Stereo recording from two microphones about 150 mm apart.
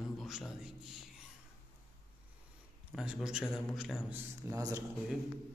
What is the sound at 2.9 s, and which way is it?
Speech, 5° right (ahead or behind).